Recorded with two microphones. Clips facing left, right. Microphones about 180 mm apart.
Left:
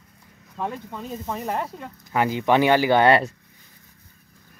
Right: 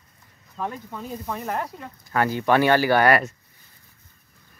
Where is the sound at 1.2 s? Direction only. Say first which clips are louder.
Left 1 dB; 15° left (ahead or behind).